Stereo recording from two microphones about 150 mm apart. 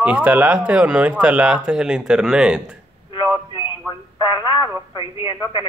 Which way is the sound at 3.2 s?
15° right (ahead or behind).